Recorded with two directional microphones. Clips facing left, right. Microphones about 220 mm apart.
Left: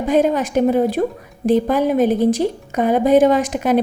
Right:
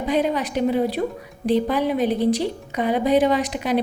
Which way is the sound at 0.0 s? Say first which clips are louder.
Left 5 dB; 50° left (ahead or behind).